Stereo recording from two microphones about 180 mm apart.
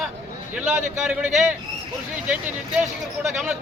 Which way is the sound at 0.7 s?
40° right (ahead or behind).